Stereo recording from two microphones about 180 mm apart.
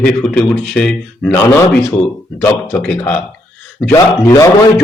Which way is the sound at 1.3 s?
15° left (ahead or behind).